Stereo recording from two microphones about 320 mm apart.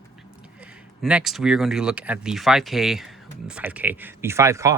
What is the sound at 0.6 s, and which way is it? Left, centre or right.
Speech, centre.